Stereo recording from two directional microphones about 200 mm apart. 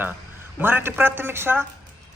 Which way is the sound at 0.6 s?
10° right (ahead or behind).